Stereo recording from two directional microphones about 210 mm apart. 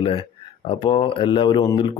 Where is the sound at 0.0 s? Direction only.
25° left (ahead or behind).